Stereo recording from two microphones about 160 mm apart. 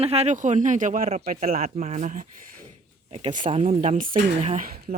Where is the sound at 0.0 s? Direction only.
40° right (ahead or behind); by 1.6 s 65° right (ahead or behind).